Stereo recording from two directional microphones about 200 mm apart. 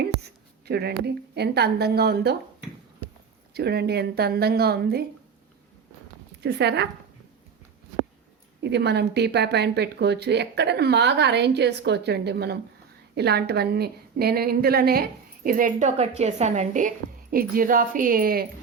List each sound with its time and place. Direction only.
0.0 s a woman's voice: 55° right (ahead or behind)
3.5 s a woman's voice: 55° right (ahead or behind)
6.4 s speech: 55° right (ahead or behind)
8.6 s a woman's voice: 55° right (ahead or behind)